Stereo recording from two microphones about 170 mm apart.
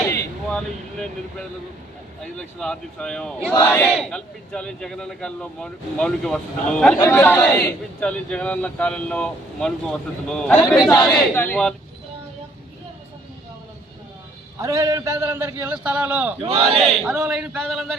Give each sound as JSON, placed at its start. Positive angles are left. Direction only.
{"t": 2.2, "sound": "a man's voice", "side_deg": 5}
{"t": 14.6, "sound": "a man's voice", "side_deg": -20}
{"t": 16.5, "sound": "speech", "side_deg": -35}
{"t": 16.8, "sound": "speech", "side_deg": 0}